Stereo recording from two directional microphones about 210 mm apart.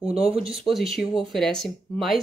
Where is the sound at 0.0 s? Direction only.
5° right (ahead or behind).